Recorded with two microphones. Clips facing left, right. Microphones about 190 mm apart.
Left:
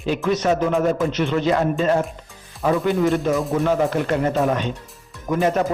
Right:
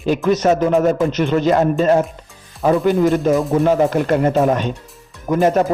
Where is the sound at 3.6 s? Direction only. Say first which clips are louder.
Right 4 dB; 40° right (ahead or behind).